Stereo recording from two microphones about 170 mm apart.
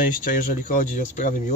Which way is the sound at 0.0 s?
50° left (ahead or behind).